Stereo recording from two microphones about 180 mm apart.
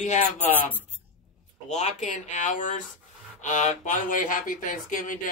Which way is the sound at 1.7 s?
40° left (ahead or behind).